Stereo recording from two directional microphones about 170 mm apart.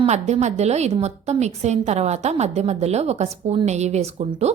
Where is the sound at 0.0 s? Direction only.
40° right (ahead or behind).